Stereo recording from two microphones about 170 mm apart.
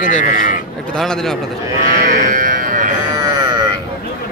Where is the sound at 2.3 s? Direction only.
50° right (ahead or behind).